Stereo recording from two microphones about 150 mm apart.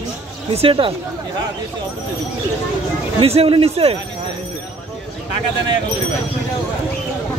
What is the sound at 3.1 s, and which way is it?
Speech, 40° right (ahead or behind).